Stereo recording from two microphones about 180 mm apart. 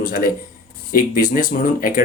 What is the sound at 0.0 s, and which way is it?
Speech, 50° left (ahead or behind).